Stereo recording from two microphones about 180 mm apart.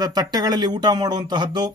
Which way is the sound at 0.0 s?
20° right (ahead or behind).